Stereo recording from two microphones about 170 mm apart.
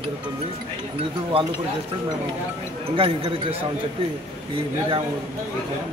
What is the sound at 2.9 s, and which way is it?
Speech, 30° right (ahead or behind).